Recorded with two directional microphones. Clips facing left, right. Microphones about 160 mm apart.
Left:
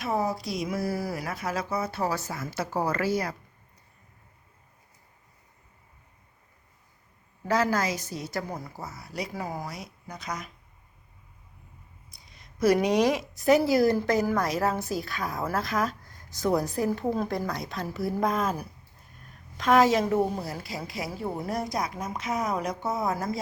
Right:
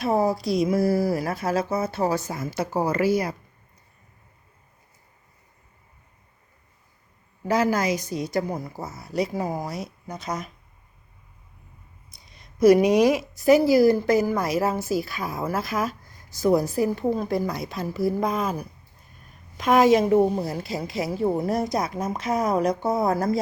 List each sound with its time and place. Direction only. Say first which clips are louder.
0.0 s speech: right 6 dB; 30° right (ahead or behind); by 3.3 s 10° right (ahead or behind)
7.4 s speech: right 3 dB; 15° right (ahead or behind)
12.5 s speech: right 6 dB; 10° right (ahead or behind)
19.5 s speech: right 4 dB; 15° right (ahead or behind); by 23.4 s 35° right (ahead or behind)